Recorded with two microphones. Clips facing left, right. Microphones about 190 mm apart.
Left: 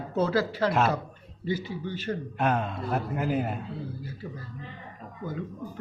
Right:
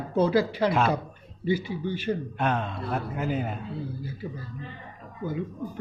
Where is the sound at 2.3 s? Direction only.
5° left (ahead or behind).